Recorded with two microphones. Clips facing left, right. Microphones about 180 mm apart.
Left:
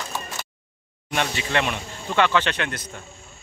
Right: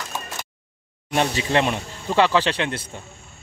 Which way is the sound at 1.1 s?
35° right (ahead or behind).